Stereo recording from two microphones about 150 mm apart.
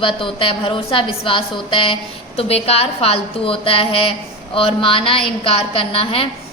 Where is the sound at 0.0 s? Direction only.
35° left (ahead or behind).